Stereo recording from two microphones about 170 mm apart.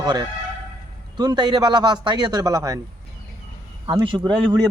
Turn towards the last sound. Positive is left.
turn(degrees=-25)  # may be behind; listen again after turning